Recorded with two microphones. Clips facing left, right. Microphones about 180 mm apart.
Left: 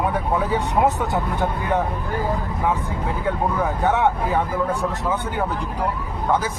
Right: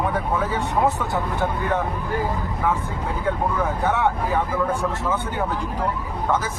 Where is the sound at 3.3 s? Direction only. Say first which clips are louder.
Even; 15° left (ahead or behind).